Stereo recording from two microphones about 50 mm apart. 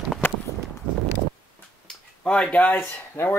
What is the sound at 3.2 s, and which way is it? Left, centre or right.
Speech, left.